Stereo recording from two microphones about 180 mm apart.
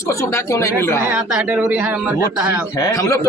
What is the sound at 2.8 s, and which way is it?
Speech, 20° left (ahead or behind).